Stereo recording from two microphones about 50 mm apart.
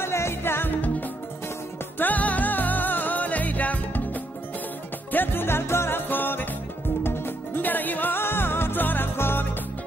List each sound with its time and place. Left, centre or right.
0.0 s music: left
2.0 s music: left
5.1 s music: left